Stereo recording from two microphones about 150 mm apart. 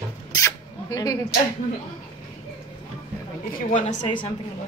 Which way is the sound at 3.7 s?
55° left (ahead or behind).